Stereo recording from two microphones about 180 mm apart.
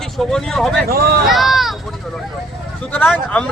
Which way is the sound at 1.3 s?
Centre (ahead or behind).